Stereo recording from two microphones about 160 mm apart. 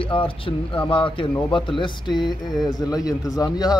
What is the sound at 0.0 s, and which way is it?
Speech, 35° left (ahead or behind).